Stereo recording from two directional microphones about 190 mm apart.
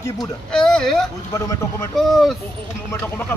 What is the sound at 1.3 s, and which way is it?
Speech, 15° left (ahead or behind).